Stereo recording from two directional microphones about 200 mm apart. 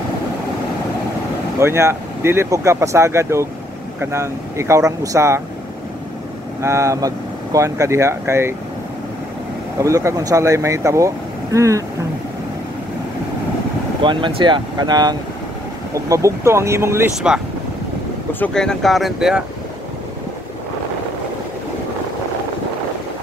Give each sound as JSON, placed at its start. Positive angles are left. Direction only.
{"t": 1.6, "sound": "speech", "side_deg": -10}
{"t": 6.6, "sound": "speech", "side_deg": -15}
{"t": 9.8, "sound": "speech", "side_deg": -15}
{"t": 14.0, "sound": "speech", "side_deg": -25}
{"t": 18.4, "sound": "speech", "side_deg": 5}